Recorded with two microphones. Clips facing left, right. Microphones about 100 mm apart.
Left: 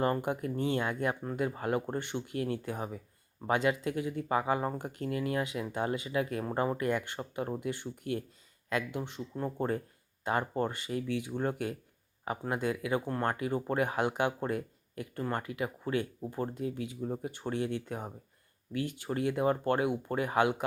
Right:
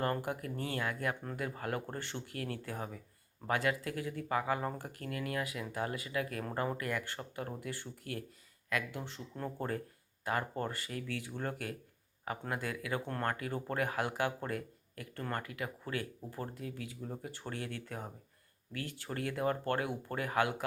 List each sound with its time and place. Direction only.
0.0 s speech: 20° left (ahead or behind)